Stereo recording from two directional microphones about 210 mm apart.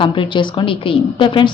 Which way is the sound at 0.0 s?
25° left (ahead or behind).